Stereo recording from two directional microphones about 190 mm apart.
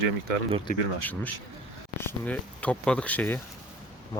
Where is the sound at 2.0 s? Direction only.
10° left (ahead or behind).